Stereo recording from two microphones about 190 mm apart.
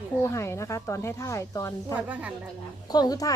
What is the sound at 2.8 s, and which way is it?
Speech, 20° left (ahead or behind).